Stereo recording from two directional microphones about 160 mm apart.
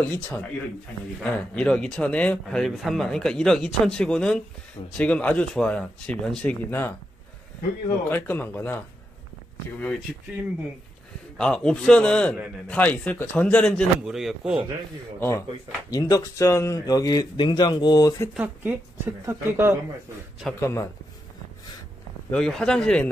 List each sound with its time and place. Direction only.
0.0 s a man's voice: 5° left (ahead or behind)
8.1 s a man's voice: 15° left (ahead or behind)
11.3 s a man's voice: 5° left (ahead or behind)
15.1 s a man's voice: 15° left (ahead or behind)
18.3 s speech: 10° right (ahead or behind)
20.6 s speech: 20° left (ahead or behind)
22.3 s speech: 5° left (ahead or behind)